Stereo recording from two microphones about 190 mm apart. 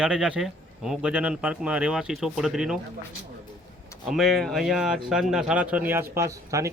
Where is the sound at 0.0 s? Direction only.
5° right (ahead or behind).